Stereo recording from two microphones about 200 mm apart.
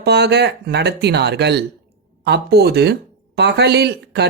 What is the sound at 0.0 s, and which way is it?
Speech, 55° right (ahead or behind).